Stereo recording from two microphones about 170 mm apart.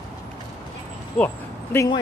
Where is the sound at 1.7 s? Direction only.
20° left (ahead or behind).